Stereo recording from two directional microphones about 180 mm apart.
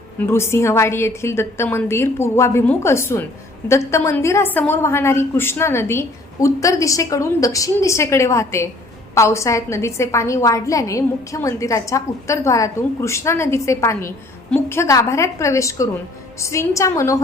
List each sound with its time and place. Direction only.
0.3 s a woman's voice: 15° left (ahead or behind)